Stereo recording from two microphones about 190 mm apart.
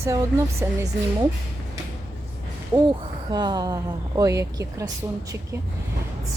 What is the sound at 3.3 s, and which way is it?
A woman's voice, 20° right (ahead or behind).